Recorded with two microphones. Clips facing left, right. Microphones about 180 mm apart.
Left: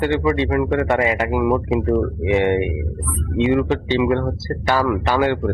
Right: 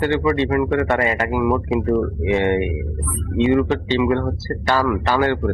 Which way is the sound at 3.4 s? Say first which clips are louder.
Right 1 dB; centre (ahead or behind).